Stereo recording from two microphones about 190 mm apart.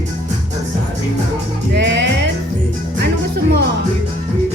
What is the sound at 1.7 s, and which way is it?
Music, 65° right (ahead or behind).